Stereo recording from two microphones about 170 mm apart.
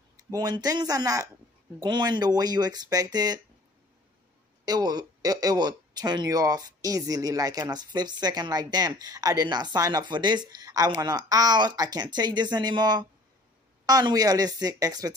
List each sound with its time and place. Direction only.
0.2 s speech: 20° right (ahead or behind)
4.6 s speech: 25° right (ahead or behind)